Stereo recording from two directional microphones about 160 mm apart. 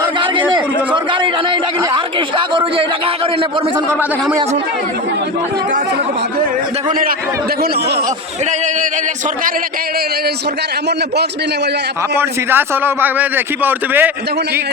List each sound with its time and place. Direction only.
0.0 s a sound: 30° right (ahead or behind)
2.1 s a man's voice: 30° right (ahead or behind)
12.1 s a man's voice: 15° right (ahead or behind)